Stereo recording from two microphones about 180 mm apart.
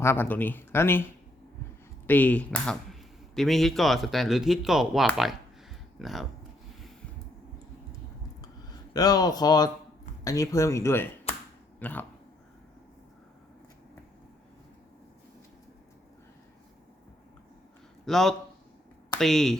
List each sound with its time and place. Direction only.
0.0 s speech: 10° left (ahead or behind)
2.0 s speech: 10° left (ahead or behind)
8.9 s speech: 20° left (ahead or behind)
18.0 s speech: centre (ahead or behind)